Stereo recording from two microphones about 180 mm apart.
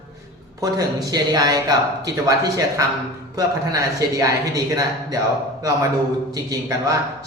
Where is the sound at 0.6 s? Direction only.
20° right (ahead or behind).